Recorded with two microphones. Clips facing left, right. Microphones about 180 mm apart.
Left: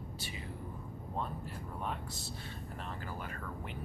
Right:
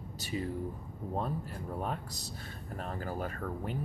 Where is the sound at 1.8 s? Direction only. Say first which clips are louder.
Right 2 dB; 40° right (ahead or behind).